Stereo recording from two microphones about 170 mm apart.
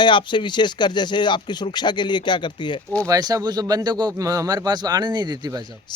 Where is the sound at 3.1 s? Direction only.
20° right (ahead or behind).